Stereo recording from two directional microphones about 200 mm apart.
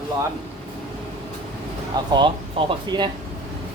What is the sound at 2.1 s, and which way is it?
Speech, 25° right (ahead or behind).